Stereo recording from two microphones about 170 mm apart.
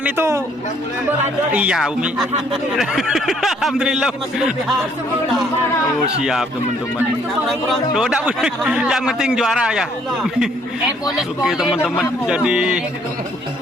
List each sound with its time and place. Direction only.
0.0 s a man's voice: 15° right (ahead or behind)
7.4 s a man's voice: centre (ahead or behind)
11.2 s a man's voice: centre (ahead or behind)